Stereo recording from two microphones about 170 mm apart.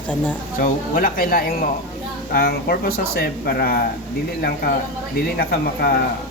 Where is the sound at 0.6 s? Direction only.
55° left (ahead or behind).